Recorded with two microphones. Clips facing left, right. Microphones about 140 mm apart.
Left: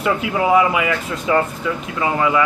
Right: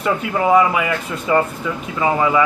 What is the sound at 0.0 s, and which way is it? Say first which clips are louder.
Speech: even; 5° left (ahead or behind).